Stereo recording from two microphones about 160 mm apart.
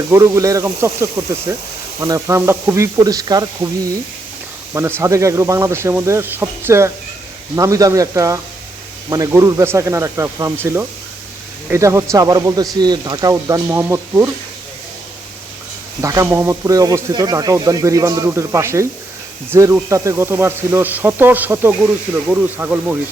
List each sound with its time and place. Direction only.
0.1 s speech: 20° right (ahead or behind)
4.7 s speech: 15° right (ahead or behind)
16.0 s speech: 20° right (ahead or behind)